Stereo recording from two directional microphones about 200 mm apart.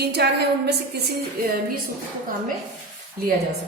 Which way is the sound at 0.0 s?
55° right (ahead or behind).